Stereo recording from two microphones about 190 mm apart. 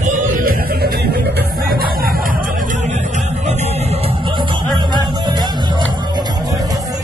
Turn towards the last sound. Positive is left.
turn(degrees=-20)  # may be behind; listen again after turning